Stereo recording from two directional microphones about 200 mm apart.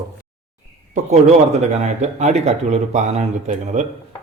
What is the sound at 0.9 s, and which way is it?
Speech, 35° right (ahead or behind).